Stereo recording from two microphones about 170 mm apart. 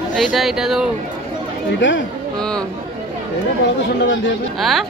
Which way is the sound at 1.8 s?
90° left.